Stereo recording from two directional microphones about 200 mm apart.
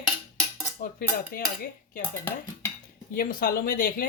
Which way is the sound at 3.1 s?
45° left (ahead or behind).